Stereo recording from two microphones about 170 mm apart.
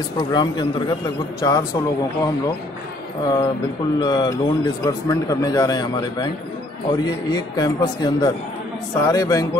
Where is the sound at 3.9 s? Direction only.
25° left (ahead or behind).